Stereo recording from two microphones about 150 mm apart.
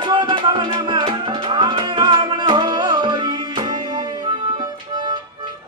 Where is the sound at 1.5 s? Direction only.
30° right (ahead or behind).